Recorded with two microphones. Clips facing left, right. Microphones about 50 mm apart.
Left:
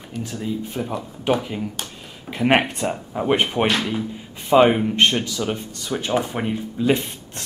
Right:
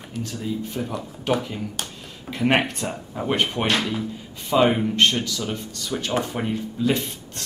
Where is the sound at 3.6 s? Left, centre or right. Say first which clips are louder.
Left 2 dB; centre.